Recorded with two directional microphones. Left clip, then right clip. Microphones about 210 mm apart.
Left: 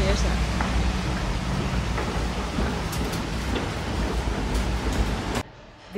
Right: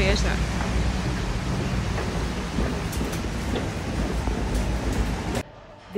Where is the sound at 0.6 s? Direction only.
Centre (ahead or behind).